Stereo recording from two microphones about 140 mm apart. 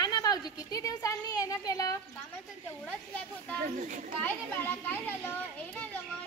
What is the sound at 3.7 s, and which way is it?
Speech, 70° right (ahead or behind).